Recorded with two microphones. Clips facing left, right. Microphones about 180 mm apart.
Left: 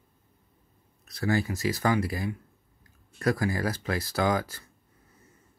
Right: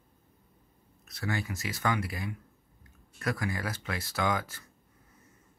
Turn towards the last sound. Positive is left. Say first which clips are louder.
# left 4 dB
turn(degrees=35)  # may be behind; listen again after turning